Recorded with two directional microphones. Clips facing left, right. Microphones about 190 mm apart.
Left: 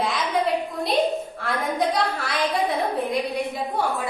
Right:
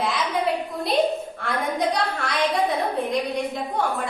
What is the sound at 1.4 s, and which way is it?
Speech, centre (ahead or behind).